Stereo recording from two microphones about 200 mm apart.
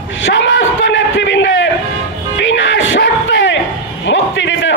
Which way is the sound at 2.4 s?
65° left (ahead or behind).